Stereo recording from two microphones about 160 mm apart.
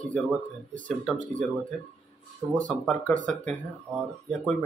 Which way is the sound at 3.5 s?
Centre (ahead or behind).